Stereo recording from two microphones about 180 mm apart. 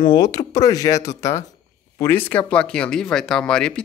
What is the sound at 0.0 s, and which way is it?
Speech, 25° left (ahead or behind).